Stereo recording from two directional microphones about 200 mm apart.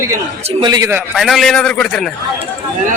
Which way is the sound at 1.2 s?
Centre (ahead or behind).